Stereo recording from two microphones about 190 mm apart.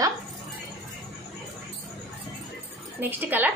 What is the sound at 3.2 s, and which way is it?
Speech, 10° right (ahead or behind).